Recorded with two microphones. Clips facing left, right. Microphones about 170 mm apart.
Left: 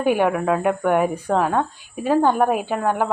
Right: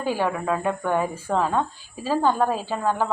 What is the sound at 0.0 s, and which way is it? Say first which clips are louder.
Speech: left 6 dB; 20° left (ahead or behind).